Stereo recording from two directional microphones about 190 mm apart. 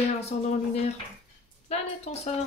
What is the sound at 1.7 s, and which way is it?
Speech, 35° left (ahead or behind).